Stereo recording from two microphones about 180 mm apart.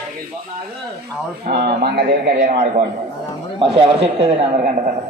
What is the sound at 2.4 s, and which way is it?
Speech, 45° right (ahead or behind).